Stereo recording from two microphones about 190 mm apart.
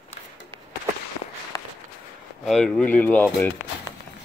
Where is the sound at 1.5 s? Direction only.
20° left (ahead or behind).